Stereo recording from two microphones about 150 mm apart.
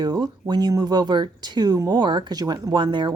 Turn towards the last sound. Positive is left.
turn(degrees=-30)  # may be behind; listen again after turning